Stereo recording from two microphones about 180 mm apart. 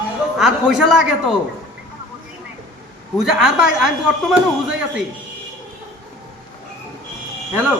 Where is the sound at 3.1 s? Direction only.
5° right (ahead or behind).